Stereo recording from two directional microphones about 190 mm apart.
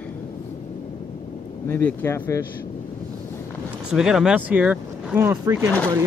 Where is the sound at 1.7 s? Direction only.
10° left (ahead or behind).